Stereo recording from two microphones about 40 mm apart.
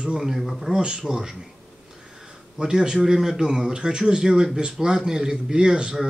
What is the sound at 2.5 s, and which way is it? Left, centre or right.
A man's voice, centre.